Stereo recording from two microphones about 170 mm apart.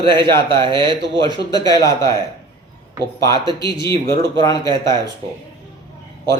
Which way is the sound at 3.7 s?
30° right (ahead or behind).